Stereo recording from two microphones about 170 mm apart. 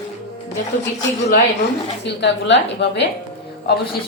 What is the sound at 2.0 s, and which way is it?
A woman's voice, 90° left.